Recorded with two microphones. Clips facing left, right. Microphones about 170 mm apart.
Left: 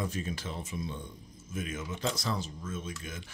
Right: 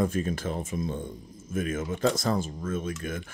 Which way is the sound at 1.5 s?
50° right (ahead or behind).